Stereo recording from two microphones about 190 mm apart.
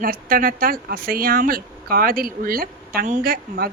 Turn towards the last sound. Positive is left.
turn(degrees=-55)  # may be behind; listen again after turning